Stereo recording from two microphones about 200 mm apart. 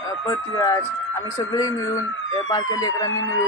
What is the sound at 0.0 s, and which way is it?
Speech, 15° left (ahead or behind).